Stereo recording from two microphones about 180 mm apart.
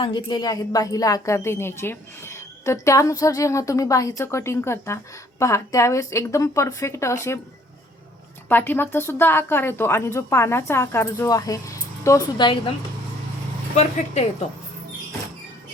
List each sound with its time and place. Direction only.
0.0 s a woman's voice: 25° left (ahead or behind)
8.4 s a woman's voice: 10° left (ahead or behind); by 12.7 s 25° left (ahead or behind)
13.7 s speech: 40° left (ahead or behind)